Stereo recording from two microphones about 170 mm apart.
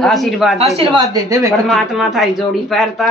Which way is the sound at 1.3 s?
20° right (ahead or behind).